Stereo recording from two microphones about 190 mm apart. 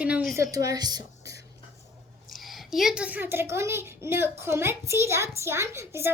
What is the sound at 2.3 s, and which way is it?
A child's voice, centre (ahead or behind).